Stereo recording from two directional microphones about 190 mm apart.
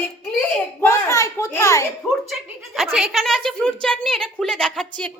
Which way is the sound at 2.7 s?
Centre (ahead or behind).